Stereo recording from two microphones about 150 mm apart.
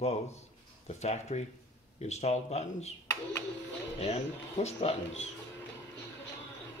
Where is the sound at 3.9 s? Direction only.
45° left (ahead or behind).